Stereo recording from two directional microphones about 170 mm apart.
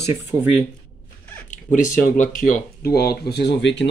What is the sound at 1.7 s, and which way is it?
Speech, 50° left (ahead or behind).